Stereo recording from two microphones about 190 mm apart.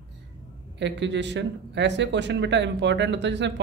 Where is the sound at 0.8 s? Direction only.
70° right (ahead or behind).